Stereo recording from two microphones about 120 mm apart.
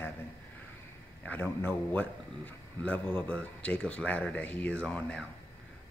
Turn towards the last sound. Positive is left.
turn(degrees=10)  # may be behind; listen again after turning